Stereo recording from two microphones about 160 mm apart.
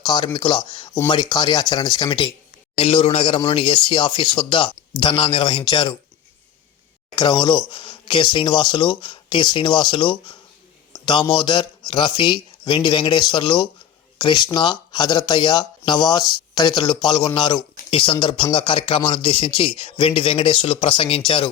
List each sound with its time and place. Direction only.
0.0 s a man's voice: 25° left (ahead or behind)
7.2 s a man's voice: 30° left (ahead or behind)